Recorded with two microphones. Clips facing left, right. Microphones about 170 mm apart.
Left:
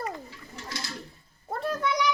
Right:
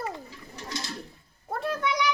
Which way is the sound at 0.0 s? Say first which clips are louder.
Even; 20° right (ahead or behind).